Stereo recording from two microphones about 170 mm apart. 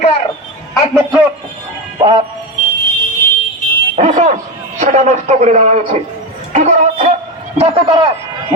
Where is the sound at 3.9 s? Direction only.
45° right (ahead or behind).